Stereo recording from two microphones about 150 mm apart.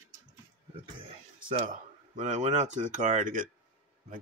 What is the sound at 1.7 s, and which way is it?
Speech, 55° right (ahead or behind).